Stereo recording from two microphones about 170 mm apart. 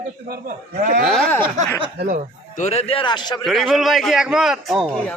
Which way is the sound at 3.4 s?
Centre (ahead or behind).